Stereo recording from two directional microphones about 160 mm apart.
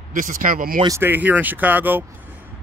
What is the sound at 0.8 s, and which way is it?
Speech, 15° right (ahead or behind).